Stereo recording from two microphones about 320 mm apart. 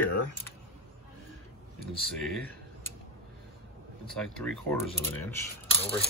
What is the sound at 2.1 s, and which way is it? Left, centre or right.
Speech, centre.